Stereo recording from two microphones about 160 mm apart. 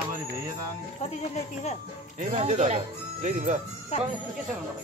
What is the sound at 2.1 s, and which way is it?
Speech, 45° right (ahead or behind).